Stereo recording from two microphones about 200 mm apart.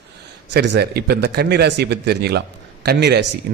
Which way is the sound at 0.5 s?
55° right (ahead or behind).